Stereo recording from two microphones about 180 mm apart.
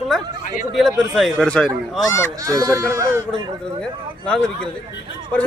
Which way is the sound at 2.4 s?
20° right (ahead or behind).